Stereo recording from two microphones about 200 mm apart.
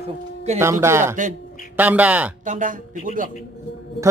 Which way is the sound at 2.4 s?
40° right (ahead or behind).